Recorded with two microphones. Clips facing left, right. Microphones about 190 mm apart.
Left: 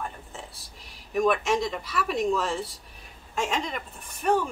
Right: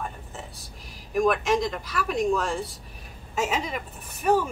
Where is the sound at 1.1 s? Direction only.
Centre (ahead or behind).